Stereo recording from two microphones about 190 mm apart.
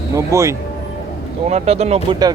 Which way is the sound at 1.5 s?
35° right (ahead or behind).